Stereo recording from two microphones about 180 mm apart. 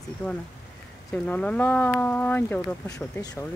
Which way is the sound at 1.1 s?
5° left (ahead or behind).